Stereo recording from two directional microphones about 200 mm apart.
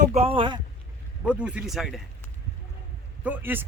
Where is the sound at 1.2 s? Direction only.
5° right (ahead or behind).